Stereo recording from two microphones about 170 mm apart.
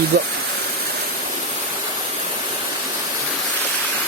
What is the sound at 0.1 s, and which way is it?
Speech, 75° right (ahead or behind).